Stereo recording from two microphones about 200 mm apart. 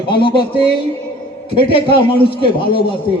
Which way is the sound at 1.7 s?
25° left (ahead or behind).